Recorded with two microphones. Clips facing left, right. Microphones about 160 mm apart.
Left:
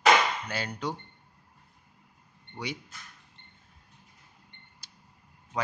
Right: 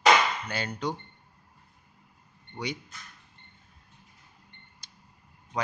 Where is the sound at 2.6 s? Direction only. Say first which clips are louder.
Right 2 dB; 5° left (ahead or behind).